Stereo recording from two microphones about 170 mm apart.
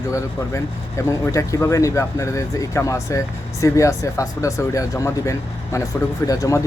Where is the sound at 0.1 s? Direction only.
20° left (ahead or behind).